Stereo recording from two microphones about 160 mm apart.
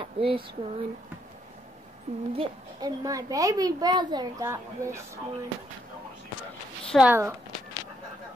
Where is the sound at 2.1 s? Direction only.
45° right (ahead or behind).